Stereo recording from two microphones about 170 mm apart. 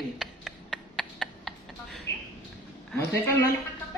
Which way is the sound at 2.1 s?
90° left.